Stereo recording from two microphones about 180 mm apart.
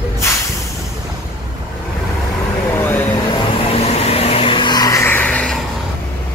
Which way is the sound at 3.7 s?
35° left (ahead or behind).